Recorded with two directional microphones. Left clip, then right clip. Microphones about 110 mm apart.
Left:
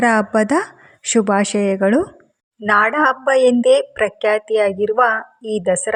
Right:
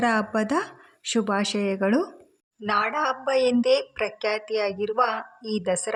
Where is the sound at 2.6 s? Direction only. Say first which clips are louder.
Left 10 dB; 55° left (ahead or behind).